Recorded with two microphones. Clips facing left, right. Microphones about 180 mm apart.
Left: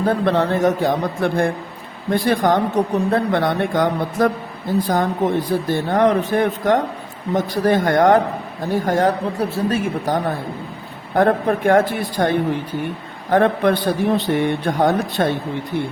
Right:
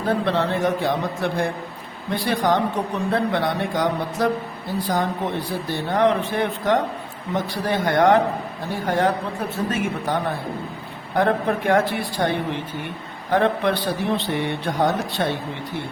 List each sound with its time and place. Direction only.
0.0 s speech: 45° left (ahead or behind)
11.1 s speech: 50° left (ahead or behind)
13.3 s speech: 50° left (ahead or behind)